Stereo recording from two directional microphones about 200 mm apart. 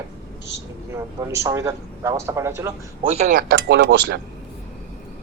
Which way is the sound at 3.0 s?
35° right (ahead or behind).